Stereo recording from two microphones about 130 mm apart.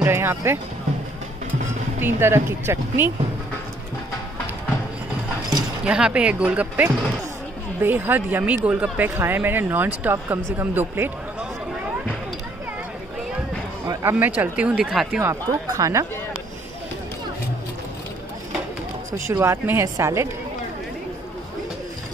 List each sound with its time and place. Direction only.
0.0 s speech: 15° right (ahead or behind)
2.0 s speech: 15° right (ahead or behind)
5.9 s speech: 10° right (ahead or behind)
13.8 s speech: 15° right (ahead or behind)
15.2 s speech: 25° right (ahead or behind)
19.1 s speech: 20° right (ahead or behind)